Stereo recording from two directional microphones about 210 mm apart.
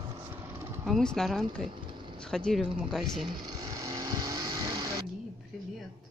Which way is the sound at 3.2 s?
20° right (ahead or behind).